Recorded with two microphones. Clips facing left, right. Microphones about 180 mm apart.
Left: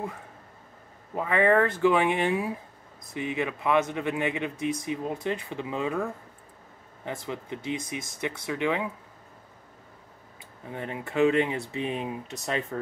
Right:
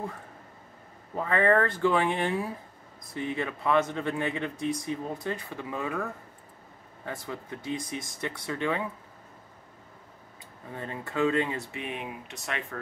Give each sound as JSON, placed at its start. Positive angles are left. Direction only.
{"t": 1.1, "sound": "speech", "side_deg": 15}
{"t": 7.1, "sound": "speech", "side_deg": 20}
{"t": 10.7, "sound": "speech", "side_deg": 15}
{"t": 11.7, "sound": "speech", "side_deg": 30}